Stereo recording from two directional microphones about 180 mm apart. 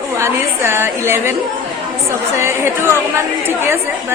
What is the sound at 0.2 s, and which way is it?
A woman's voice, 15° right (ahead or behind).